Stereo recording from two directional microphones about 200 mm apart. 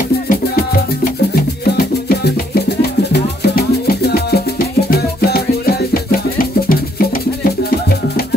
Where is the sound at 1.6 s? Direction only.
50° left (ahead or behind).